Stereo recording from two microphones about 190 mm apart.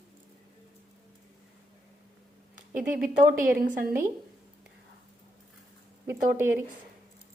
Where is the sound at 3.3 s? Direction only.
45° right (ahead or behind).